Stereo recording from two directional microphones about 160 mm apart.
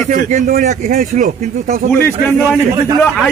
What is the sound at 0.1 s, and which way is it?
Speech, 50° right (ahead or behind).